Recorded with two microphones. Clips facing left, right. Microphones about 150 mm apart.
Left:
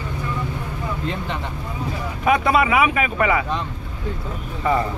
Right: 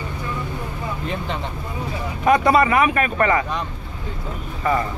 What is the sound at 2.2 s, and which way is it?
Speech, centre (ahead or behind).